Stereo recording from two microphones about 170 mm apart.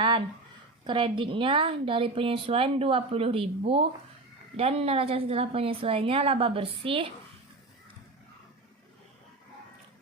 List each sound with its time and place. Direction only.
0.9 s a woman's voice: 30° right (ahead or behind)